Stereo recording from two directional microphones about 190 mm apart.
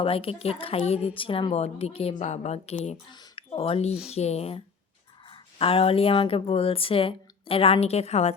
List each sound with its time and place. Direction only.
0.0 s speech: 30° left (ahead or behind)
3.1 s speech: 25° left (ahead or behind)